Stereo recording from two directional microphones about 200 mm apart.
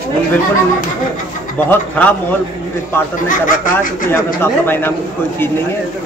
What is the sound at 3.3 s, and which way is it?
Speech, 40° left (ahead or behind).